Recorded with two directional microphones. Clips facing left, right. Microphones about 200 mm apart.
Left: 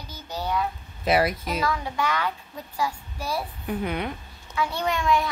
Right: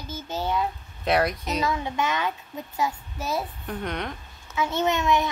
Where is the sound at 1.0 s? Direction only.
Centre (ahead or behind).